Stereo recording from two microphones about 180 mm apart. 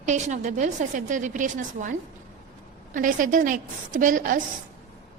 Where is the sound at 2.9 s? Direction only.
45° right (ahead or behind).